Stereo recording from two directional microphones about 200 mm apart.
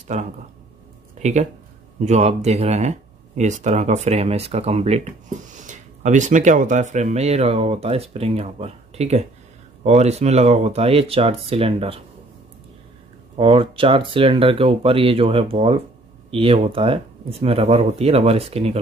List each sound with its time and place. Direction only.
0.1 s speech: 35° right (ahead or behind)
13.4 s speech: 25° right (ahead or behind)